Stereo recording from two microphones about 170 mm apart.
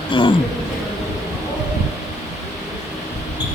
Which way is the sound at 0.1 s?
30° left (ahead or behind).